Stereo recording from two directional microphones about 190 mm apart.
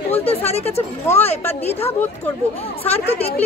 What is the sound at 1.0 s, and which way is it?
A woman's voice, 10° left (ahead or behind).